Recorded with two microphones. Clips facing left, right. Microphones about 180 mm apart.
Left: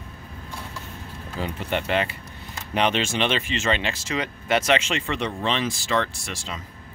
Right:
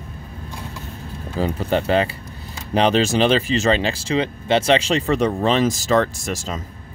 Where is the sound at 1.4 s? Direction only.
35° right (ahead or behind).